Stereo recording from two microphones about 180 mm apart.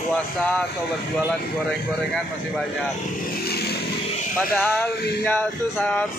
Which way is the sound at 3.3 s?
60° left (ahead or behind).